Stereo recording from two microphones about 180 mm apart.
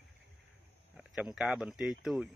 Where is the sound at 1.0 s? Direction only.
Centre (ahead or behind).